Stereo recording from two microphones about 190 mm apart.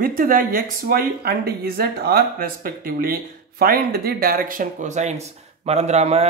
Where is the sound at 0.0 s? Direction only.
45° right (ahead or behind).